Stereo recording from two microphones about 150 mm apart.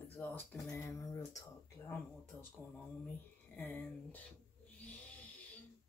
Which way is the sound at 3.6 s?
10° left (ahead or behind).